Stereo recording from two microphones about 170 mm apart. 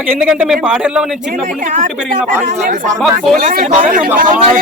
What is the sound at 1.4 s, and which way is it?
A man's voice, 45° right (ahead or behind).